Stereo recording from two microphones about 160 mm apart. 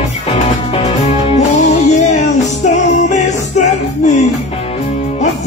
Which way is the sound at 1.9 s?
45° left (ahead or behind).